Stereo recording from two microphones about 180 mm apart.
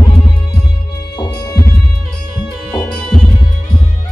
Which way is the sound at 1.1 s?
20° left (ahead or behind).